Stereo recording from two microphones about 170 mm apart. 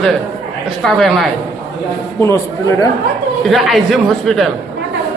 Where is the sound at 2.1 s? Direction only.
15° left (ahead or behind).